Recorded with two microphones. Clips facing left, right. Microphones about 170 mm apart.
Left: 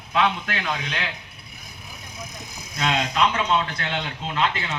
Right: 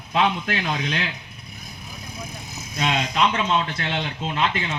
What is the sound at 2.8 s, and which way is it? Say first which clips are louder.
Speech: even; 20° right (ahead or behind).